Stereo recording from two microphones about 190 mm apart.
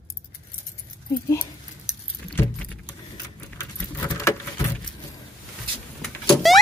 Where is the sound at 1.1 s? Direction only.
15° left (ahead or behind).